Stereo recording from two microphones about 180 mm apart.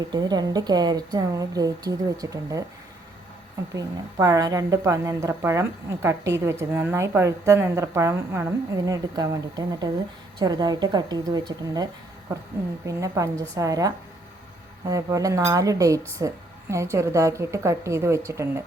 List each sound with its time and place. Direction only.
0.1 s a woman's voice: 25° right (ahead or behind)
3.8 s a woman's voice: 20° right (ahead or behind)